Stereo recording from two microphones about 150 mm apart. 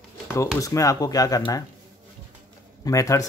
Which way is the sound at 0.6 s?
20° left (ahead or behind).